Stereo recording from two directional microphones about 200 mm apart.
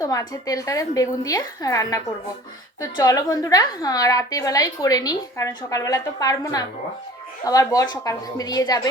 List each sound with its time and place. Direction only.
0.0 s a woman's voice: 15° left (ahead or behind)
3.0 s a woman's voice: 15° left (ahead or behind)